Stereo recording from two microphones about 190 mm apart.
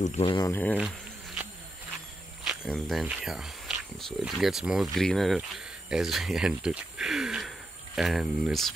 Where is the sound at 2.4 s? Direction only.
Centre (ahead or behind).